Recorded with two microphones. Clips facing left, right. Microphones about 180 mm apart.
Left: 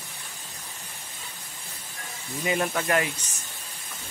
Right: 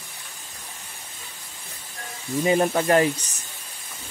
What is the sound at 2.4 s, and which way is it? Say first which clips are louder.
Speech: right 6 dB; 30° right (ahead or behind).